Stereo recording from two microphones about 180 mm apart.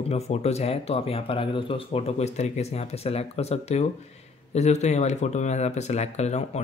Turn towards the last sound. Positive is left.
turn(degrees=40)  # may be behind; listen again after turning